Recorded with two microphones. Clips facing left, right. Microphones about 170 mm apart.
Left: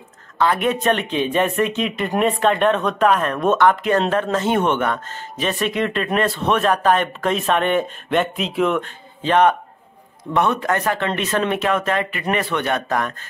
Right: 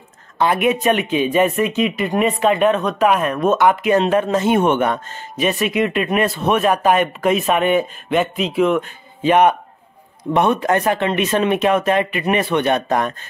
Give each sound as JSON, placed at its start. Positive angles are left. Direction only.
{"t": 0.4, "sound": "speech", "side_deg": -15}